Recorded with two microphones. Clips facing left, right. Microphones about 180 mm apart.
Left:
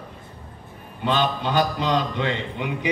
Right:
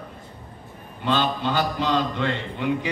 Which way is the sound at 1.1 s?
15° left (ahead or behind).